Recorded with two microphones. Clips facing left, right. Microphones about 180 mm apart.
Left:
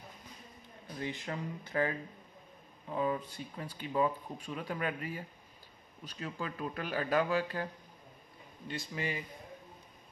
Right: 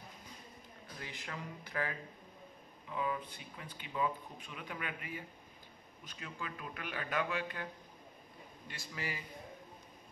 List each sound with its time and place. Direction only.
0.9 s speech: 30° left (ahead or behind)
8.6 s speech: 25° left (ahead or behind)